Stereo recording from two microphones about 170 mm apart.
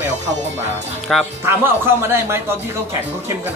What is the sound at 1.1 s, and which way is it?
Speech, centre (ahead or behind).